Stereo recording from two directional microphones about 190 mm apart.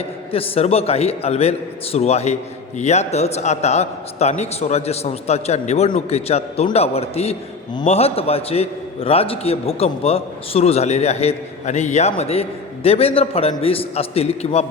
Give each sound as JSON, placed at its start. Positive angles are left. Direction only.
{"t": 0.3, "sound": "a man's voice", "side_deg": 30}